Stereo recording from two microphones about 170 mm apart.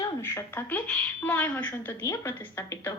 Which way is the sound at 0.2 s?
15° left (ahead or behind).